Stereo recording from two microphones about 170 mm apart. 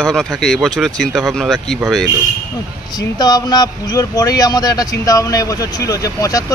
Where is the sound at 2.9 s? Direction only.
25° left (ahead or behind).